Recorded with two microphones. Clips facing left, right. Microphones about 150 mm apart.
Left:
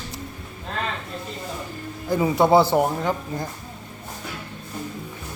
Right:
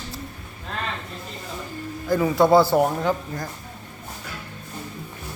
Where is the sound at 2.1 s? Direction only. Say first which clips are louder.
Right 1 dB; 15° left (ahead or behind).